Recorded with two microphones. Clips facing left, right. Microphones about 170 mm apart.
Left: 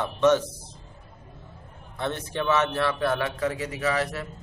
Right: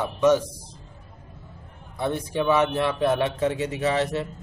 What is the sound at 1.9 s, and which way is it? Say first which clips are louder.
A man's voice: right 4 dB; 10° right (ahead or behind).